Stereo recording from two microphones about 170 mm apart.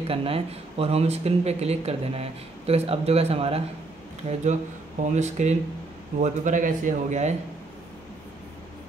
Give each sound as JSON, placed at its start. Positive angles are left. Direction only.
{"t": 0.0, "sound": "a man's voice", "side_deg": -35}